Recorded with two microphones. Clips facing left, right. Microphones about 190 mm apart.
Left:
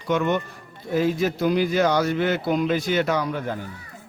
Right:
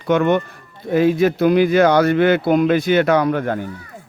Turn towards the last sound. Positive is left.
turn(degrees=-60)  # may be behind; listen again after turning